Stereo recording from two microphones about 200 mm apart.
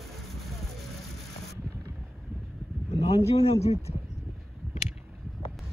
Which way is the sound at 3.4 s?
30° left (ahead or behind).